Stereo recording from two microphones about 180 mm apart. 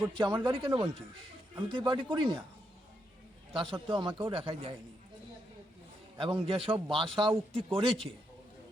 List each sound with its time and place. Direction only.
0.2 s a man's voice: 20° right (ahead or behind)
3.5 s a man's voice: 30° right (ahead or behind)
6.1 s a man's voice: 30° right (ahead or behind)